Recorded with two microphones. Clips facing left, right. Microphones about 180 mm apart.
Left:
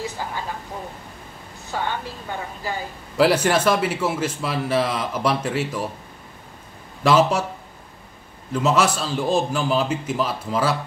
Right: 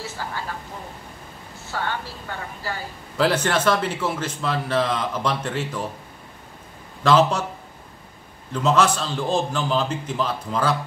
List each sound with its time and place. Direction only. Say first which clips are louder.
0.0 s a woman's voice: left 2 dB; 15° left (ahead or behind)
1.7 s a woman's voice: left 2 dB; 15° left (ahead or behind)
7.0 s a woman's voice: even; 10° left (ahead or behind)
8.6 s a woman's voice: right 1 dB; 10° left (ahead or behind)